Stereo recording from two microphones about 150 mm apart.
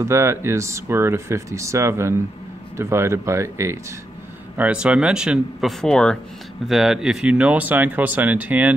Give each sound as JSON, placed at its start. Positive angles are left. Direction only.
{"t": 0.0, "sound": "speech", "side_deg": -15}
{"t": 4.6, "sound": "speech", "side_deg": -10}